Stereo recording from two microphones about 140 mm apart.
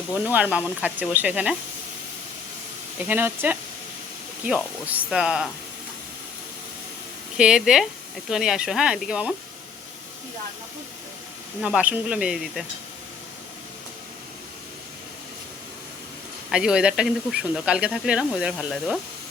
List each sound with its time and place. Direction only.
0.3 s speech: 10° right (ahead or behind)
3.1 s speech: 15° right (ahead or behind)
7.3 s speech: 5° right (ahead or behind)
11.6 s speech: 10° right (ahead or behind)
16.5 s speech: 5° right (ahead or behind)